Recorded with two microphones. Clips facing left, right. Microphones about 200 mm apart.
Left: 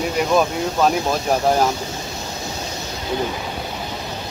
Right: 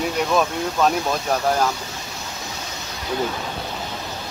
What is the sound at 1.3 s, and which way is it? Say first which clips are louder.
Speech: left 3 dB; 20° left (ahead or behind).